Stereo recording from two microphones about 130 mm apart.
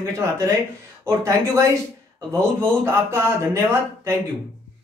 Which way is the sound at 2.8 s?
20° right (ahead or behind).